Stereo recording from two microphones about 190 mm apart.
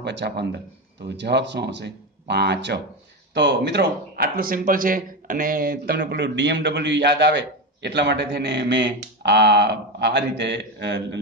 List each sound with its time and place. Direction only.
0.0 s a man's voice: 60° right (ahead or behind)
5.9 s a man's voice: 70° right (ahead or behind)